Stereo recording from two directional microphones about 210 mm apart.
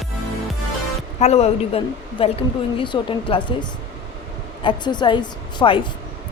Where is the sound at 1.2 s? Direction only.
30° left (ahead or behind).